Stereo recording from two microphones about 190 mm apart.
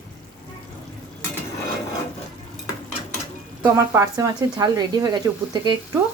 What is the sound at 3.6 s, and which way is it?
Speech, 10° right (ahead or behind).